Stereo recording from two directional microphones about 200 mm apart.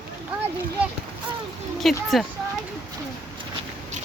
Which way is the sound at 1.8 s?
Centre (ahead or behind).